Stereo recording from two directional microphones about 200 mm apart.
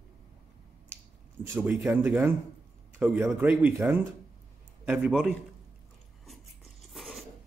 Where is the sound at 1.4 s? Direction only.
10° right (ahead or behind).